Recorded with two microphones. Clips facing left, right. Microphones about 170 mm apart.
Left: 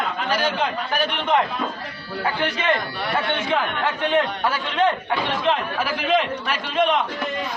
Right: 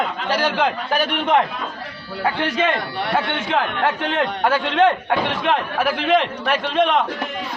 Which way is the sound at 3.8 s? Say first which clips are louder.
Even; 65° right (ahead or behind).